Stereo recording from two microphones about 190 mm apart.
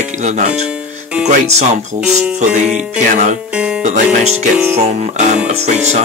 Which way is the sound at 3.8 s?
40° right (ahead or behind).